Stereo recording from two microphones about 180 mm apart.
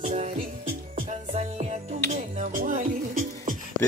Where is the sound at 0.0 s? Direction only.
40° right (ahead or behind).